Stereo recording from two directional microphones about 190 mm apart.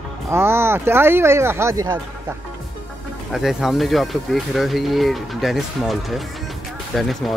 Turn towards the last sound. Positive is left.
turn(degrees=0)  # may be behind; listen again after turning